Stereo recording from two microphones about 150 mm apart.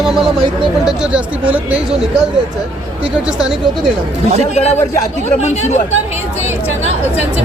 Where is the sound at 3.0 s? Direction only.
5° right (ahead or behind).